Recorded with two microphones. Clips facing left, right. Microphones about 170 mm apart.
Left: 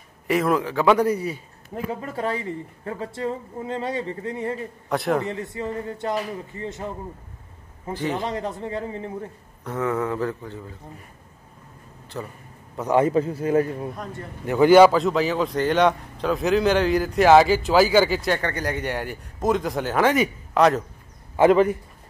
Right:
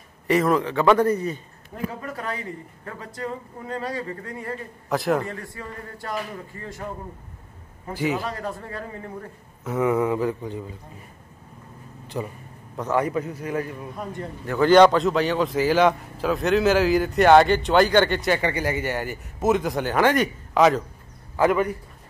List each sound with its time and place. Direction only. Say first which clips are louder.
0.3 s a man's voice: right 1 dB; centre (ahead or behind)
2.0 s speech: left 4 dB; 25° left (ahead or behind)
4.8 s speech: even; centre (ahead or behind)
5.2 s speech: left 5 dB; 20° left (ahead or behind)
7.9 s speech: right 1 dB; 10° right (ahead or behind)
8.2 s speech: left 3 dB; 20° left (ahead or behind)
9.7 s speech: right 3 dB; 10° right (ahead or behind)
12.1 s speech: right 3 dB; 15° right (ahead or behind)
12.9 s speech: left 5 dB; 25° left (ahead or behind)
14.4 s speech: left 2 dB; 15° left (ahead or behind)
21.4 s speech: left 4 dB; 25° left (ahead or behind)